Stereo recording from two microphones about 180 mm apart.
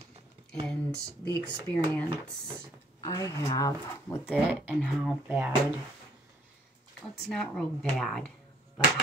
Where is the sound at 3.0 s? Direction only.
20° left (ahead or behind).